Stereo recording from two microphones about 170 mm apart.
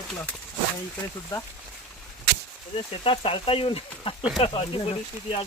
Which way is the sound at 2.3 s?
80° right.